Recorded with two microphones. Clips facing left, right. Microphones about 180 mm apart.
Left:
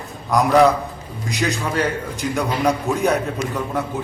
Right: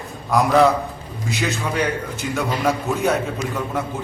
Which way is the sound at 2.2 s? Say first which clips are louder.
Left 2 dB; centre (ahead or behind).